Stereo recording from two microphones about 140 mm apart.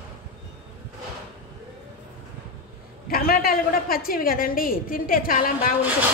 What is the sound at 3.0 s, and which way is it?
A woman's voice, 90° left.